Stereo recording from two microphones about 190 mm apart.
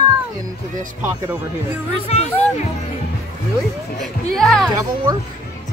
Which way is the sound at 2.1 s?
35° left (ahead or behind).